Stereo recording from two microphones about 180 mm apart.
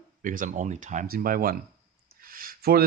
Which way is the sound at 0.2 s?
45° right (ahead or behind).